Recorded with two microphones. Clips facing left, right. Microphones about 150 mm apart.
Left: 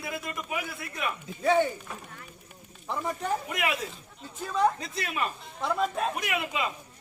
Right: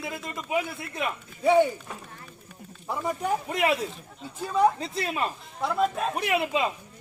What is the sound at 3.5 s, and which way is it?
Speech, 30° right (ahead or behind).